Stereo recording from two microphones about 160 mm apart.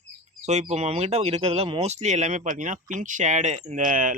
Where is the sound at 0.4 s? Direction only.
45° right (ahead or behind).